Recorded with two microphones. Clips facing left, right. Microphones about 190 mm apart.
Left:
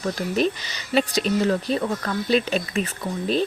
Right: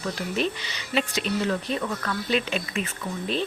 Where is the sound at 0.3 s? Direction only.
40° left (ahead or behind).